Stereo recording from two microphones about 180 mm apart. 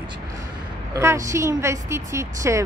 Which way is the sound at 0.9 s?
15° right (ahead or behind).